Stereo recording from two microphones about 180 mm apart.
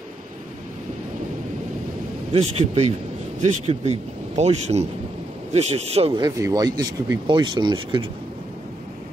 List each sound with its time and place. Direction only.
2.3 s speech: 35° right (ahead or behind)
6.1 s speech: 20° right (ahead or behind)